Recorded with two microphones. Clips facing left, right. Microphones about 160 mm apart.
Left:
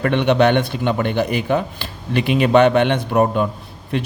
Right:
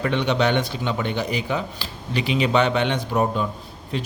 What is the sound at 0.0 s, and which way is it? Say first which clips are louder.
A man's voice: left 6 dB; 60° left (ahead or behind).